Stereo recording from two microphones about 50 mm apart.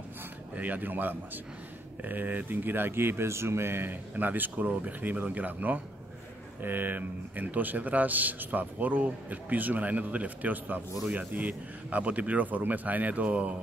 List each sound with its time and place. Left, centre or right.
0.6 s a man's voice: right
3.9 s a man's voice: right